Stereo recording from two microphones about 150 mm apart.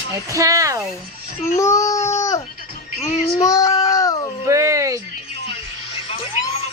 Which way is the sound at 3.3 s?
20° left (ahead or behind).